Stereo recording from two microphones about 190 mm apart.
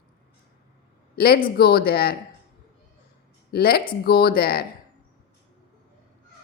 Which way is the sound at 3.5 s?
55° left (ahead or behind).